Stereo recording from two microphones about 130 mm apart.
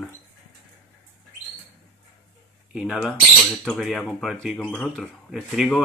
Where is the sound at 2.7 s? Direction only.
5° right (ahead or behind).